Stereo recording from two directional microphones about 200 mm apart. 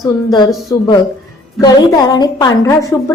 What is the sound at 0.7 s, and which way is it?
A woman's voice, 15° left (ahead or behind).